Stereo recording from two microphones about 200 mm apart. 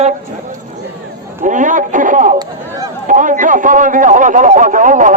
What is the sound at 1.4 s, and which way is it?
Radio, 40° right (ahead or behind).